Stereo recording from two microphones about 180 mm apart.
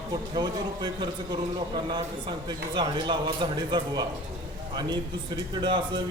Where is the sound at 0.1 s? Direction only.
20° right (ahead or behind).